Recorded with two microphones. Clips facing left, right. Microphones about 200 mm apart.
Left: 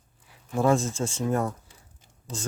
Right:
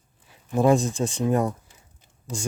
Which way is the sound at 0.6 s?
15° right (ahead or behind).